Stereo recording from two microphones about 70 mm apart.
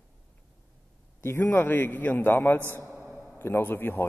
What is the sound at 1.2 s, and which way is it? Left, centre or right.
A man's voice, left.